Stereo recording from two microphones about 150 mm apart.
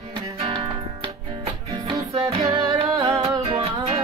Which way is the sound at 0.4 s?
35° right (ahead or behind).